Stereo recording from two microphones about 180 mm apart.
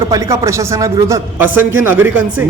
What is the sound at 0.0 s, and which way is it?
A man's voice, 20° right (ahead or behind).